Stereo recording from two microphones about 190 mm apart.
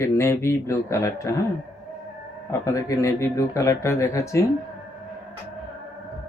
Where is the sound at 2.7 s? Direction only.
15° left (ahead or behind).